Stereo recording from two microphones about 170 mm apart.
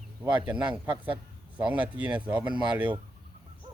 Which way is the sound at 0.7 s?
30° right (ahead or behind).